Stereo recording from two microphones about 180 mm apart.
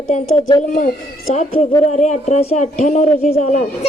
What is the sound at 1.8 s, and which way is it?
Speech, 40° left (ahead or behind).